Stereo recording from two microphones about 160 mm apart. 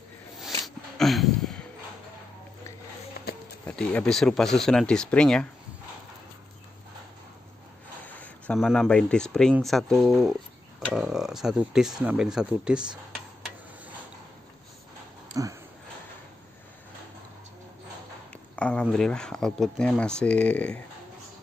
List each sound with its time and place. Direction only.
0.9 s a sound: centre (ahead or behind)
3.6 s speech: 5° left (ahead or behind)
8.5 s speech: centre (ahead or behind)
15.3 s speech: 20° right (ahead or behind)
18.6 s speech: 5° left (ahead or behind)